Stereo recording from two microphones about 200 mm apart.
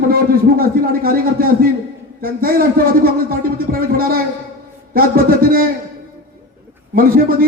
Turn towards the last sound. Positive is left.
turn(degrees=-45)  # may be behind; listen again after turning